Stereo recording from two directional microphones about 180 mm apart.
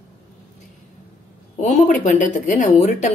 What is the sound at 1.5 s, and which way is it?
A woman's voice, 45° left (ahead or behind).